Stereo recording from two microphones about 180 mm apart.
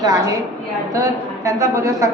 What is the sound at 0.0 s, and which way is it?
A woman's voice, 20° right (ahead or behind).